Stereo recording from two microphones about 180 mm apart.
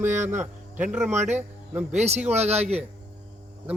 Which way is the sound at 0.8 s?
10° right (ahead or behind).